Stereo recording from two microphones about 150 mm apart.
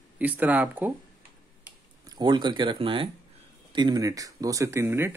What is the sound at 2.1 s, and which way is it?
Speech, 30° right (ahead or behind).